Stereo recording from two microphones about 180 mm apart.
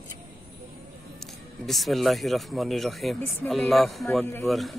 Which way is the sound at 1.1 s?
Centre (ahead or behind).